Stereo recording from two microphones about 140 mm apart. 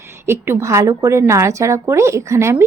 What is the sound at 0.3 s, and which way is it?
Speech, 15° right (ahead or behind).